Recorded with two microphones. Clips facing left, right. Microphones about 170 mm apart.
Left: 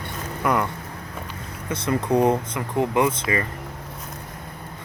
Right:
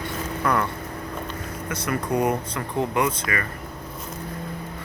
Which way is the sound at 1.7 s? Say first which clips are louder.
Left 4 dB; 25° left (ahead or behind).